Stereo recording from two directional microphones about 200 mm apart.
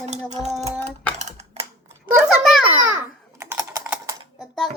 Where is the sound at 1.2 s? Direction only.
35° right (ahead or behind).